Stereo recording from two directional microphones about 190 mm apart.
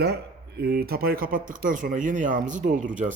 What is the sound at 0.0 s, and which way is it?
Speech, 55° right (ahead or behind).